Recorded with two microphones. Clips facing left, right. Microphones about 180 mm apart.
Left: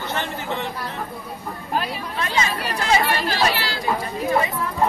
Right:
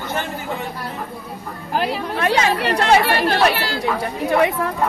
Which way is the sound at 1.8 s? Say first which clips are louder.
Right 7 dB; 70° right (ahead or behind).